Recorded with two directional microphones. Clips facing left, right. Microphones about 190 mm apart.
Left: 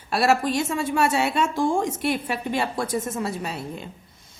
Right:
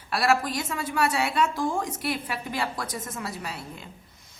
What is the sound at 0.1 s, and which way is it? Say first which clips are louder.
A woman's voice: left 4 dB; 25° left (ahead or behind).